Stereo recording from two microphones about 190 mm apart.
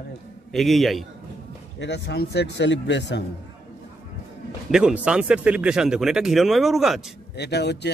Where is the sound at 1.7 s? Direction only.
65° left (ahead or behind).